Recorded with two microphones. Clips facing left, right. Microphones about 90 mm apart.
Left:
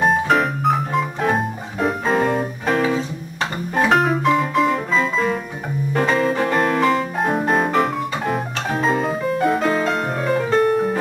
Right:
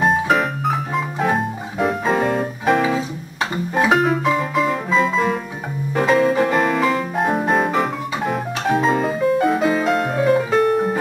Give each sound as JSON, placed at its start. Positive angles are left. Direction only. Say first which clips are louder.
{"t": 0.0, "sound": "piano", "louder": "even", "side_deg": 0}
{"t": 3.7, "sound": "music", "louder": "even", "side_deg": -5}